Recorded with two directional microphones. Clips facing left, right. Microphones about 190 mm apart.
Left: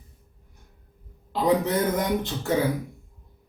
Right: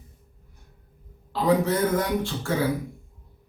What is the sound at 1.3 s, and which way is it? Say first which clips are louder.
A man's voice: even; 20° left (ahead or behind).